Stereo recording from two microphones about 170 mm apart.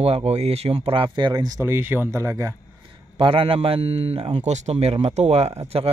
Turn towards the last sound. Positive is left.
turn(degrees=-35)  # may be behind; listen again after turning